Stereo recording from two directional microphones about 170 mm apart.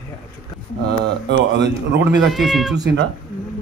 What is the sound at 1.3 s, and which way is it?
A man's voice, 90° right.